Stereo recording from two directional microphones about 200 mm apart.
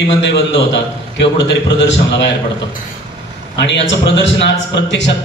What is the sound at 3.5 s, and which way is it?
A man's voice, 60° left (ahead or behind).